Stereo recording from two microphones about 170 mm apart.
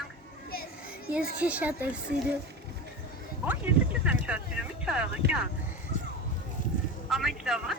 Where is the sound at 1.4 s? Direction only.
10° right (ahead or behind).